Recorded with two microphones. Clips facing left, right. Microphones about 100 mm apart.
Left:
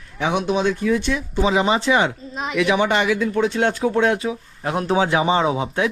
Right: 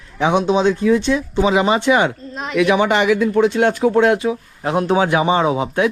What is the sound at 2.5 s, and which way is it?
Speech, 50° right (ahead or behind).